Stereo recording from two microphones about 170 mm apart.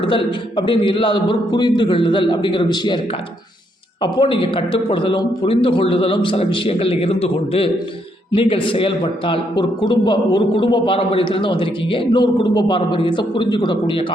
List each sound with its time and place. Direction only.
0.0 s a man's voice: 30° left (ahead or behind)
4.0 s a man's voice: 30° left (ahead or behind)